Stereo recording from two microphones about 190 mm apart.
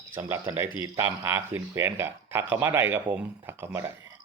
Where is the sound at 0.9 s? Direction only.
15° right (ahead or behind).